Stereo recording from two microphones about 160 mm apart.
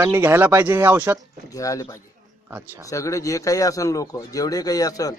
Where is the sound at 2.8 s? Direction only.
20° left (ahead or behind).